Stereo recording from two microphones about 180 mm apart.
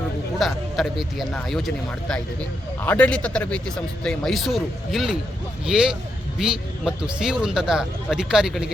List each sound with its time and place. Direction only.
0.3 s speech: centre (ahead or behind)